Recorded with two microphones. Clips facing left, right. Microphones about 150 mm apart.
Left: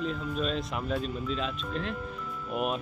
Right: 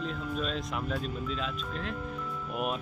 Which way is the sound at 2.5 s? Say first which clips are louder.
Left 3 dB; centre (ahead or behind).